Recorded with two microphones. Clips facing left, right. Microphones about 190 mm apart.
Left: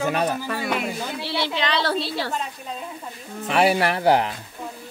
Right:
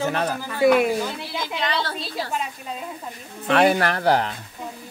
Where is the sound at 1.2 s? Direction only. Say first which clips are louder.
Left 3 dB; 80° left.